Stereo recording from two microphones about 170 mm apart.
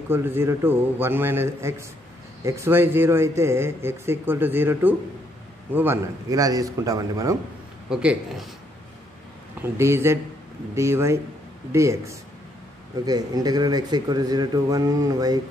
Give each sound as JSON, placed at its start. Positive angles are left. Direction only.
{"t": 0.1, "sound": "a man's voice", "side_deg": -15}
{"t": 7.9, "sound": "a man's voice", "side_deg": -5}
{"t": 9.6, "sound": "a man's voice", "side_deg": -15}